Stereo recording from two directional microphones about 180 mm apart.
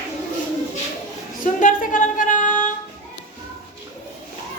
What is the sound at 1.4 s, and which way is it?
Music, 45° left (ahead or behind).